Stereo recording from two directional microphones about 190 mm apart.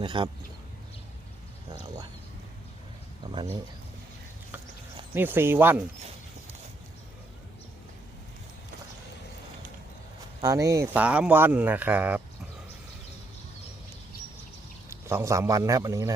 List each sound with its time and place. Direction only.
0.0 s speech: 25° right (ahead or behind)
5.1 s speech: 10° right (ahead or behind)
10.4 s speech: 15° right (ahead or behind)
14.8 s a man's voice: 15° right (ahead or behind)